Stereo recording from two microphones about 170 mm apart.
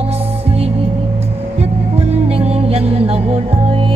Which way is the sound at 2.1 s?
35° right (ahead or behind).